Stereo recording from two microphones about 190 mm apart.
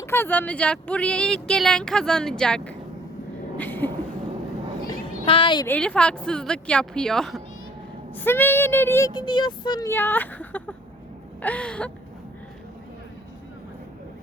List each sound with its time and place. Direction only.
0.0 s speech: 10° left (ahead or behind)
3.6 s a sound: 10° left (ahead or behind)
5.2 s a woman's voice: 30° left (ahead or behind)
5.6 s speech: 5° left (ahead or behind)